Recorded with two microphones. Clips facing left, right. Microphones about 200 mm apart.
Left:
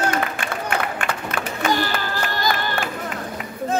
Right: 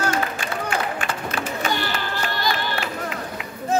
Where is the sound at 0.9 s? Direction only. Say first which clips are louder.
Left 1 dB; 55° left (ahead or behind).